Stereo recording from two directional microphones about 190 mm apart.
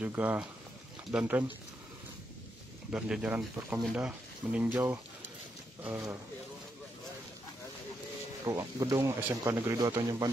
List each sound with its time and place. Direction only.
0.0 s speech: 10° right (ahead or behind)
2.9 s speech: 5° right (ahead or behind)
8.5 s speech: 20° right (ahead or behind)